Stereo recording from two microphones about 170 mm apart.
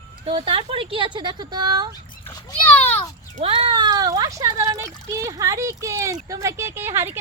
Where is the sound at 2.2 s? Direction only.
10° left (ahead or behind).